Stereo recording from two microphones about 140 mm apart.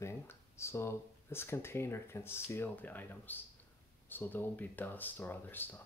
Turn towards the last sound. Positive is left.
turn(degrees=15)  # may be behind; listen again after turning